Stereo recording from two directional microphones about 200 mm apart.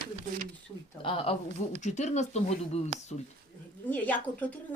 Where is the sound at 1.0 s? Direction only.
30° left (ahead or behind).